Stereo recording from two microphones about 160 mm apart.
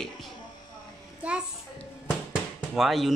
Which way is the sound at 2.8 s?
Centre (ahead or behind).